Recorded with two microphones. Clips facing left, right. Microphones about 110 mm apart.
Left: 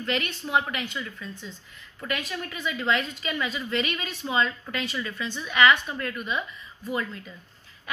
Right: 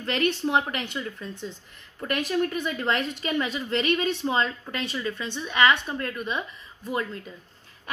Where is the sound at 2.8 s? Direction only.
45° right (ahead or behind).